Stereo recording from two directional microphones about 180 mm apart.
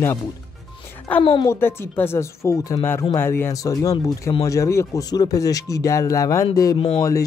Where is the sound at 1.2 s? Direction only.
30° left (ahead or behind).